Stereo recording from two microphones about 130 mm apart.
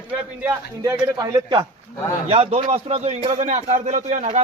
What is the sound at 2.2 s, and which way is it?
A man's voice, 50° right (ahead or behind).